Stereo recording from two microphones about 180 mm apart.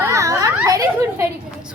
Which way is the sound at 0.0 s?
15° right (ahead or behind).